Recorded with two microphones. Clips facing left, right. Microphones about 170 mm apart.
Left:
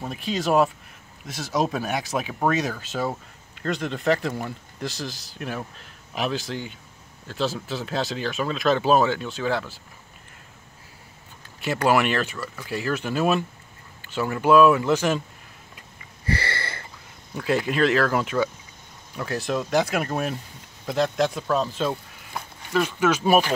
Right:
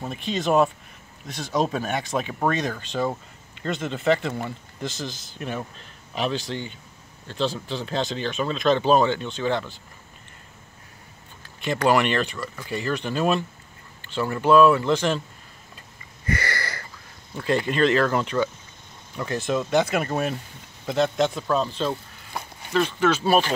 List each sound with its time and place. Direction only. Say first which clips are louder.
0.0 s speech: even; centre (ahead or behind)
11.6 s speech: even; 5° left (ahead or behind)
16.3 s a sound: even; 30° left (ahead or behind)
17.4 s speech: even; 5° left (ahead or behind)